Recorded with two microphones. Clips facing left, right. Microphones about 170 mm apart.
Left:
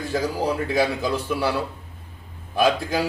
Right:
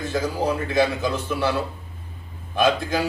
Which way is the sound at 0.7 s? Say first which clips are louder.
Right 1 dB; 10° left (ahead or behind).